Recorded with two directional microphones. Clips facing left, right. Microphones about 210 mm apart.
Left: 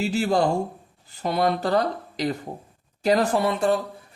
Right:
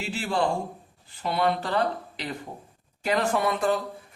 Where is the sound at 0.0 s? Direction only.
40° left (ahead or behind).